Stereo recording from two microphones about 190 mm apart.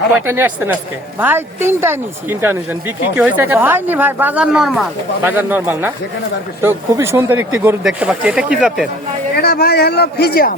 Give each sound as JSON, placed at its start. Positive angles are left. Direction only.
{"t": 0.3, "sound": "speech", "side_deg": -10}
{"t": 9.4, "sound": "a man's voice", "side_deg": 55}